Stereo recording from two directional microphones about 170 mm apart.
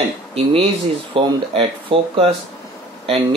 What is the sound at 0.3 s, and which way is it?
Speech, 35° right (ahead or behind).